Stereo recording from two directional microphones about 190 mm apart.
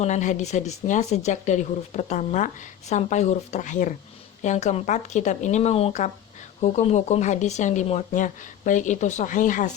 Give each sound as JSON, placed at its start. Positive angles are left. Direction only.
{"t": 0.0, "sound": "speech", "side_deg": 40}